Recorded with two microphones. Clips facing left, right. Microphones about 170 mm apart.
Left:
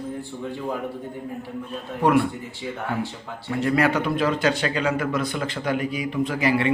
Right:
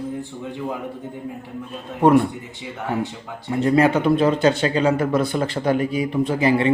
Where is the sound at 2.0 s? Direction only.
25° right (ahead or behind).